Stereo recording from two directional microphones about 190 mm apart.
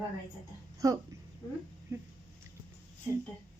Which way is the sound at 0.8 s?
20° right (ahead or behind).